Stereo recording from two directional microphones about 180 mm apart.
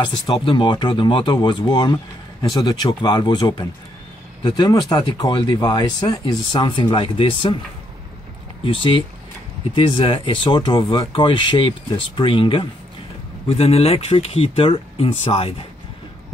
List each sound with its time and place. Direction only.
0.0 s speech: 25° left (ahead or behind)
8.6 s speech: 30° left (ahead or behind)